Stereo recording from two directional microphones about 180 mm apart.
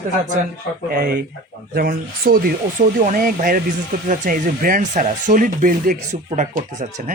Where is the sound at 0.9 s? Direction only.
55° right (ahead or behind).